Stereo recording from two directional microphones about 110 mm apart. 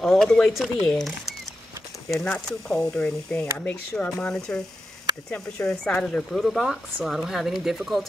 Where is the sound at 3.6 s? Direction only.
15° left (ahead or behind).